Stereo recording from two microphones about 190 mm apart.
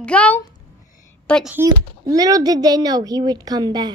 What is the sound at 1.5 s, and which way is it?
A child's voice, 15° right (ahead or behind).